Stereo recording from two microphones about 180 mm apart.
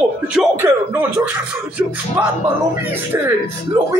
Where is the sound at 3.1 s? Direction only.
15° right (ahead or behind).